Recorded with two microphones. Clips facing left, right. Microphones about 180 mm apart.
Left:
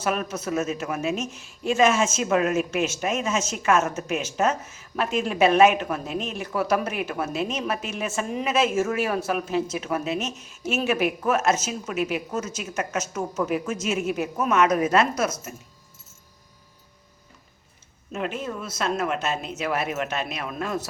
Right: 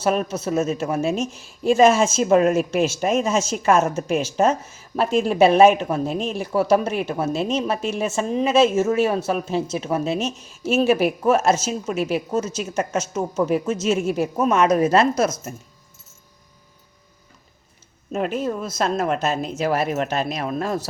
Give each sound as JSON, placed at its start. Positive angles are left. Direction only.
{"t": 0.0, "sound": "speech", "side_deg": -30}
{"t": 18.1, "sound": "speech", "side_deg": -40}